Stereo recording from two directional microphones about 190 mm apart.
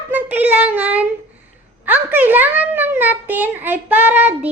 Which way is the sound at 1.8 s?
10° right (ahead or behind).